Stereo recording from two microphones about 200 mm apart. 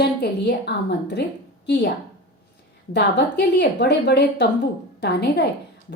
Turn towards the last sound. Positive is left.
turn(degrees=55)  # may be behind; listen again after turning